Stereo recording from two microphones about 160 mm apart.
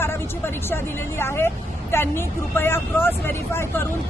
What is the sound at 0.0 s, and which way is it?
Speech, 15° left (ahead or behind).